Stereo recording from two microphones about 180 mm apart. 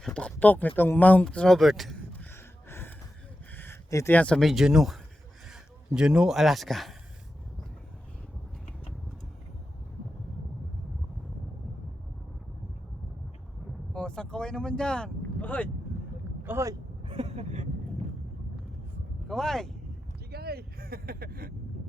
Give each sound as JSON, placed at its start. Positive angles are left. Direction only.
{"t": 0.0, "sound": "speech", "side_deg": 5}
{"t": 2.3, "sound": "a sound", "side_deg": 15}
{"t": 3.5, "sound": "speech", "side_deg": 10}
{"t": 13.9, "sound": "speech", "side_deg": 5}
{"t": 16.4, "sound": "speech", "side_deg": -15}
{"t": 17.1, "sound": "a sound", "side_deg": -35}
{"t": 19.3, "sound": "speech", "side_deg": 5}
{"t": 20.3, "sound": "vehicle", "side_deg": -60}